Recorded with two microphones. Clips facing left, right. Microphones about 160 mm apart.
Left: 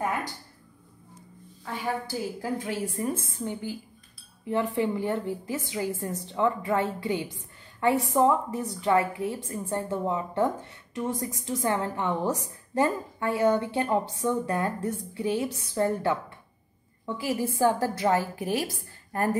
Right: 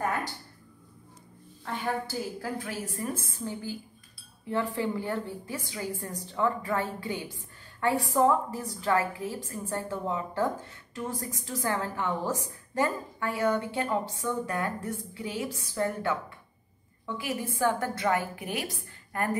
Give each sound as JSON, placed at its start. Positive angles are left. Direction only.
{"t": 1.6, "sound": "a woman's voice", "side_deg": 10}
{"t": 2.7, "sound": "a woman's voice", "side_deg": 25}